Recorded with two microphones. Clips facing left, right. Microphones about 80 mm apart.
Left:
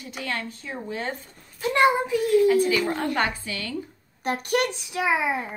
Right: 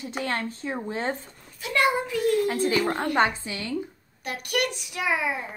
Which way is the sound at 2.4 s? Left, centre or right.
Right.